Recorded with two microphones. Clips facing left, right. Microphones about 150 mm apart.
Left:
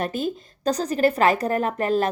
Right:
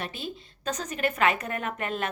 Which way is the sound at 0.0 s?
45° left (ahead or behind).